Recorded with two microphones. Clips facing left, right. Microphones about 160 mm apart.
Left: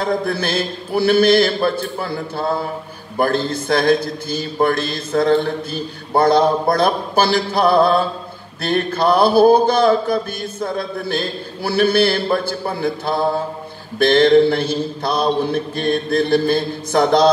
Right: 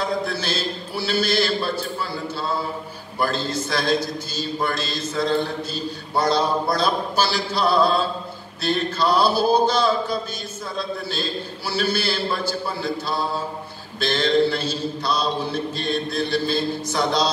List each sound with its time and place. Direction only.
0.0 s mantra: 55° left (ahead or behind)